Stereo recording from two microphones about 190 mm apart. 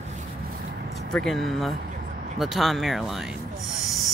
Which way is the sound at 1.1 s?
Centre (ahead or behind).